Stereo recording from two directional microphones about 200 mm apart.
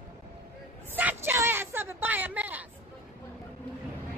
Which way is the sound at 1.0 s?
10° right (ahead or behind).